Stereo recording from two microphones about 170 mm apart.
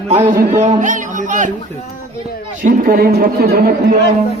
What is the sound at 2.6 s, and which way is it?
Speech, 55° right (ahead or behind).